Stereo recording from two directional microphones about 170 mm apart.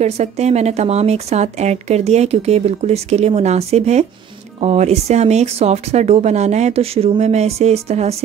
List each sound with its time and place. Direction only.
0.0 s a woman's voice: 40° right (ahead or behind)